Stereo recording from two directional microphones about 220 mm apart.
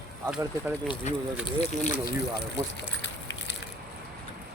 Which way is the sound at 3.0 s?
55° left (ahead or behind).